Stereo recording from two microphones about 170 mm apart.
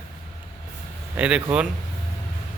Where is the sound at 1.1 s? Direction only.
5° right (ahead or behind).